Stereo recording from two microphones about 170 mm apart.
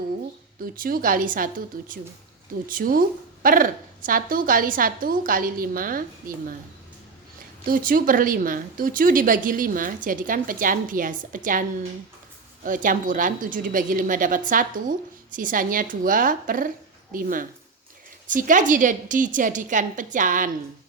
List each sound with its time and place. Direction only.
0.6 s a woman's voice: 60° right (ahead or behind)
7.7 s a woman's voice: 55° right (ahead or behind)
12.6 s a woman's voice: 55° right (ahead or behind)